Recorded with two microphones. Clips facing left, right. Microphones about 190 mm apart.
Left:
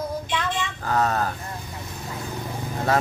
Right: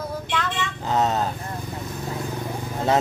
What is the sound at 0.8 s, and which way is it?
Speech, 20° right (ahead or behind).